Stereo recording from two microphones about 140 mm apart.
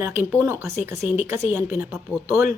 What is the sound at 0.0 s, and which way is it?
Speech, 15° right (ahead or behind).